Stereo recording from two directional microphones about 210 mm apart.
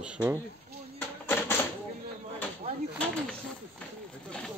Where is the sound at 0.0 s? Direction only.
5° right (ahead or behind).